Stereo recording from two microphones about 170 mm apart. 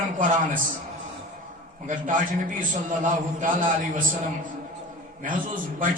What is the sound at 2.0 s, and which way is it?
A man's voice, 50° right (ahead or behind).